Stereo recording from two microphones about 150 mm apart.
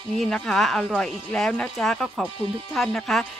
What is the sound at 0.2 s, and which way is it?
Speech, 5° left (ahead or behind).